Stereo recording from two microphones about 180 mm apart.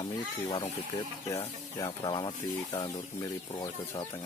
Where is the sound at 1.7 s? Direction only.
20° left (ahead or behind).